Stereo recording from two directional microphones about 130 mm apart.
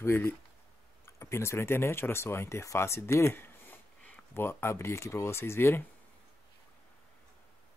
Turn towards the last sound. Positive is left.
turn(degrees=20)  # may be behind; listen again after turning